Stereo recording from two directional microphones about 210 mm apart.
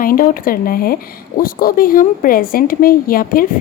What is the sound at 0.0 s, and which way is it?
A woman's voice, 40° left (ahead or behind).